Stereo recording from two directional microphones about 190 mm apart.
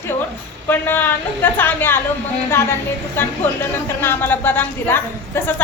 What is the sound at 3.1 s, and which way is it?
A woman's voice, 10° left (ahead or behind).